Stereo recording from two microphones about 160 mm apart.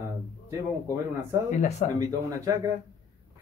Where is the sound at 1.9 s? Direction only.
20° right (ahead or behind).